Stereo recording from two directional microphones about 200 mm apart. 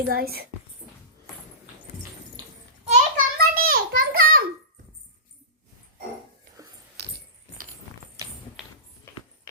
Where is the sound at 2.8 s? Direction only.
35° right (ahead or behind).